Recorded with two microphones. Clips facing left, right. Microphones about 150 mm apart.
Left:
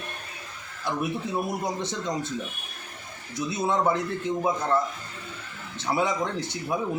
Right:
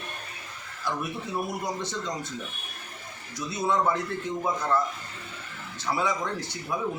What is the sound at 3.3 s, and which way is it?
A man's voice, 25° left (ahead or behind).